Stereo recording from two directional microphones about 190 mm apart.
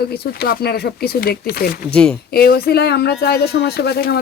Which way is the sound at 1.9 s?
5° left (ahead or behind).